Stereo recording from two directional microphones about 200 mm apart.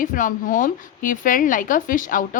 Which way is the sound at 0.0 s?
40° left (ahead or behind).